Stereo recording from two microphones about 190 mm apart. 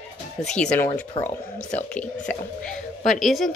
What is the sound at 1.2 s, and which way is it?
Speech, 25° left (ahead or behind).